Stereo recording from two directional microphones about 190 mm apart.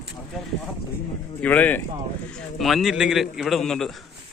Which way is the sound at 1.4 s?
10° left (ahead or behind).